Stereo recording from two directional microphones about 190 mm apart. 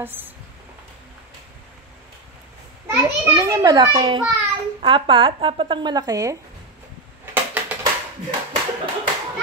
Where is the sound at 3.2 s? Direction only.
15° right (ahead or behind).